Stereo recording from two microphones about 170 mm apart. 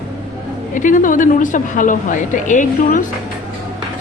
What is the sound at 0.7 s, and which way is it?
A woman's voice, 50° left (ahead or behind).